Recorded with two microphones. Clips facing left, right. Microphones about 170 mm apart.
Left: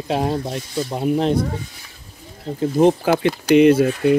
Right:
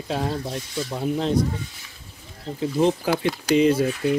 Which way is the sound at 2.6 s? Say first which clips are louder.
Left 5 dB; 50° left (ahead or behind).